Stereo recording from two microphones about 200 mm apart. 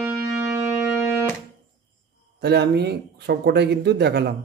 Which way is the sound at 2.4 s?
55° right (ahead or behind).